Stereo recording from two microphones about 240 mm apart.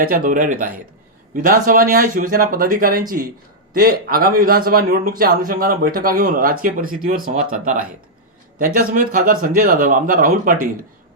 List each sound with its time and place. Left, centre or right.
0.0 s speech: right